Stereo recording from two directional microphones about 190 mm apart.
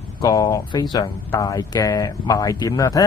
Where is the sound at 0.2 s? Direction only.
20° left (ahead or behind).